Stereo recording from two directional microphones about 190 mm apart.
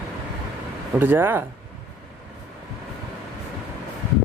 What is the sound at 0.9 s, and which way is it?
Speech, 10° right (ahead or behind).